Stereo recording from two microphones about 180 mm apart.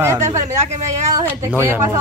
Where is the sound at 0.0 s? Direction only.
15° right (ahead or behind).